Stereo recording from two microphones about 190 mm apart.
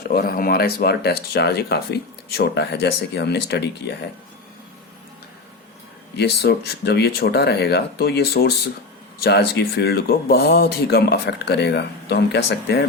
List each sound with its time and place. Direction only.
0.1 s speech: 50° left (ahead or behind)
6.1 s speech: 60° left (ahead or behind)